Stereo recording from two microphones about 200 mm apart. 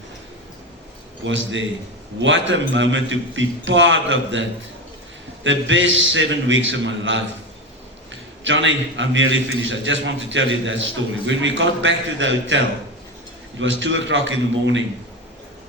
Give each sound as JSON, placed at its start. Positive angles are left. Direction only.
{"t": 1.2, "sound": "a man's voice", "side_deg": -70}
{"t": 8.4, "sound": "a man's voice", "side_deg": -70}